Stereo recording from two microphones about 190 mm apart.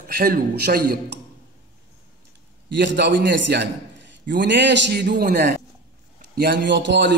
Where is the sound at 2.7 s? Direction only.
65° right (ahead or behind).